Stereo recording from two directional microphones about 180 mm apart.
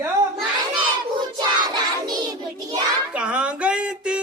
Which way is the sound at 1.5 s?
25° right (ahead or behind).